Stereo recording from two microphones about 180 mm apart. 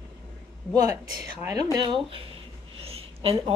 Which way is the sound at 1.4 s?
20° right (ahead or behind).